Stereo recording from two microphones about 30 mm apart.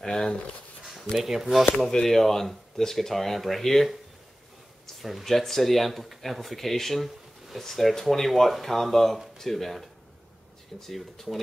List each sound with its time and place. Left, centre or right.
0.0 s speech: centre
1.1 s speech: centre
2.0 s speech: centre
10.9 s speech: centre